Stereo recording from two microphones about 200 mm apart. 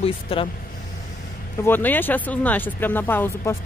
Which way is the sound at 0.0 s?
25° left (ahead or behind).